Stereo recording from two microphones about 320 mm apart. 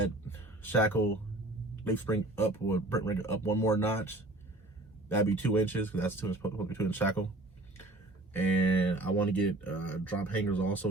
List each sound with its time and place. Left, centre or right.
0.3 s a sound: centre
1.8 s speech: centre
8.8 s speech: centre